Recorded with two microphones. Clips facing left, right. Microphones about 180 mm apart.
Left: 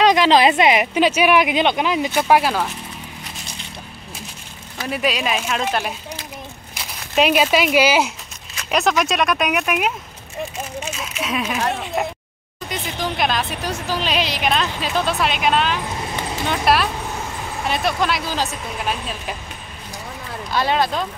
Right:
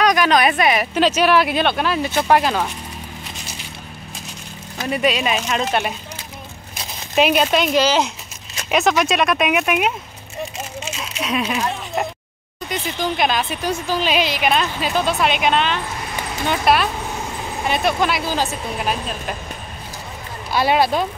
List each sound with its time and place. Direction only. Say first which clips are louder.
0.0 s speech: left 2 dB; 25° left (ahead or behind); by 2.7 s 5° left (ahead or behind)
4.8 s speech: right 2 dB; centre (ahead or behind)
7.2 s speech: even; centre (ahead or behind)
8.6 s speech: right 1 dB; centre (ahead or behind)
11.2 s speech: right 2 dB; centre (ahead or behind)
12.6 s speech: right 2 dB; centre (ahead or behind)
20.5 s speech: right 3 dB; 10° right (ahead or behind)